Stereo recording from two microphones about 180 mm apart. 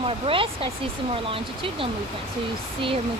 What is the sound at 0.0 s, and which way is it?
Speech, 30° right (ahead or behind).